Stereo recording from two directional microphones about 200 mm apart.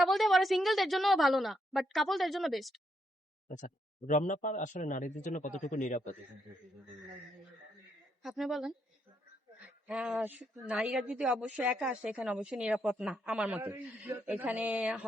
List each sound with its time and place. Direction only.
0.0 s a woman's voice: centre (ahead or behind)
3.5 s speech: 40° left (ahead or behind)
8.2 s a woman's voice: centre (ahead or behind)
9.8 s a woman's voice: centre (ahead or behind)
13.6 s a woman's voice: 15° right (ahead or behind)